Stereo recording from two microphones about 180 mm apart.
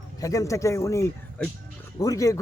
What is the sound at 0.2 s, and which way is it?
A man's voice, 20° left (ahead or behind).